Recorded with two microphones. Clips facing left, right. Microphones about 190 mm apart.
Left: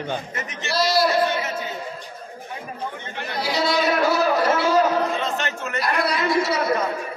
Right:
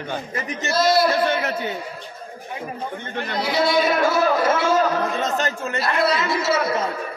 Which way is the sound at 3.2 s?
50° right (ahead or behind).